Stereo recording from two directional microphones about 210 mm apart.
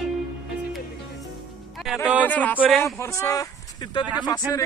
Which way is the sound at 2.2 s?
10° left (ahead or behind).